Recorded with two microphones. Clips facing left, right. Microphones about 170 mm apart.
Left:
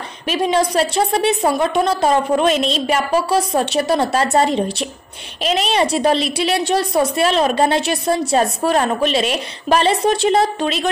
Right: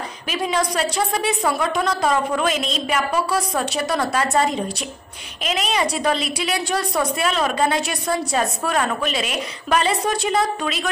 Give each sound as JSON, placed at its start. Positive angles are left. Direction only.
{"t": 0.3, "sound": "a woman's voice", "side_deg": 25}